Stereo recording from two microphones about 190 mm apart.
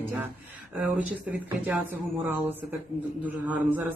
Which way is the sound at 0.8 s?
5° right (ahead or behind).